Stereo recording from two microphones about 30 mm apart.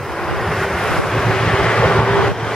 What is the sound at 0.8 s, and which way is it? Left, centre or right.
Vehicle, centre.